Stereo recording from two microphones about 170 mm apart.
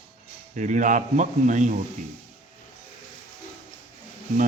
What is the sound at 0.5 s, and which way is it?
A man's voice, 50° right (ahead or behind).